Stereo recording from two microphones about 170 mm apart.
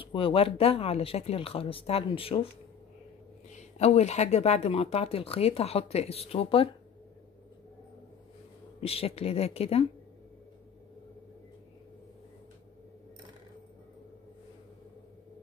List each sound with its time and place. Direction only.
0.1 s speech: 30° left (ahead or behind)
3.7 s speech: 40° left (ahead or behind)
8.8 s speech: 35° left (ahead or behind)